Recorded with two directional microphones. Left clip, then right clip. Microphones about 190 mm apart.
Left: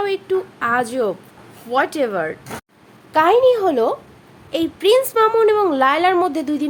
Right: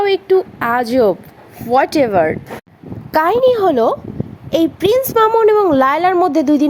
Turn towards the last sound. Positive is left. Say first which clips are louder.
# right 6 dB
turn(degrees=-25)  # may be behind; listen again after turning